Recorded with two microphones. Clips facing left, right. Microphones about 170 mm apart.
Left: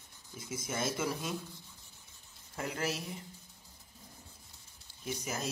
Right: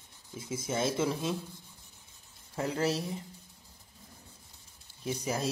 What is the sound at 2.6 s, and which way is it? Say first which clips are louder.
Speech: right 6 dB; 30° right (ahead or behind).